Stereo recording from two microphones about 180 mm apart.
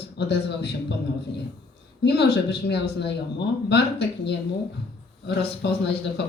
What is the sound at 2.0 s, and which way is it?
Speech, 65° left (ahead or behind).